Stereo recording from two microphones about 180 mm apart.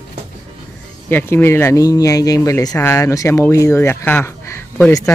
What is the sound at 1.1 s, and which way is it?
Speech, 10° left (ahead or behind).